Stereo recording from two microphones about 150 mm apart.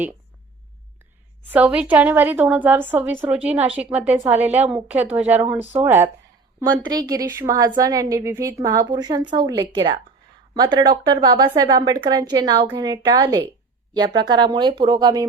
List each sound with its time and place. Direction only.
1.5 s a woman's voice: 10° right (ahead or behind)
4.4 s a woman's voice: 45° right (ahead or behind)
4.7 s a woman's voice: 10° right (ahead or behind)
6.6 s a woman's voice: 25° right (ahead or behind)